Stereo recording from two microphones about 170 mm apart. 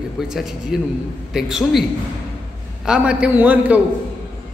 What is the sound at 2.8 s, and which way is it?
Speech, 5° right (ahead or behind).